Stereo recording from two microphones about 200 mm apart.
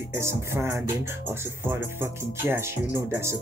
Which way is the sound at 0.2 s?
15° right (ahead or behind).